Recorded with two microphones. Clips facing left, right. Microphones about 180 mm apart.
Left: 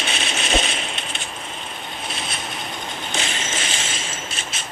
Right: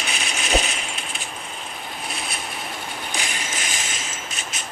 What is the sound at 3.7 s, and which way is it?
Mechanisms, 30° left (ahead or behind).